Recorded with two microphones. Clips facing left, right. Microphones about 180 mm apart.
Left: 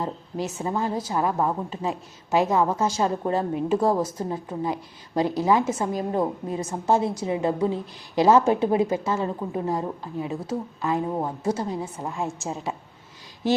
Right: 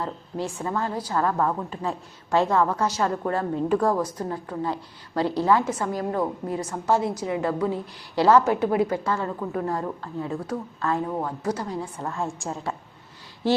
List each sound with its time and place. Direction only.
0.0 s a woman's voice: 15° left (ahead or behind)